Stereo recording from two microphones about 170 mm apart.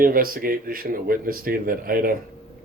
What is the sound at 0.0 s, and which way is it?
Speech, 55° right (ahead or behind).